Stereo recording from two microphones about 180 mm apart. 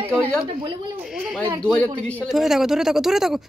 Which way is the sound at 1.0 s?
Centre (ahead or behind).